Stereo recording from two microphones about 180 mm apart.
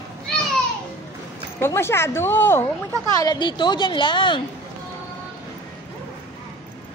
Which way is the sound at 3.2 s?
25° left (ahead or behind).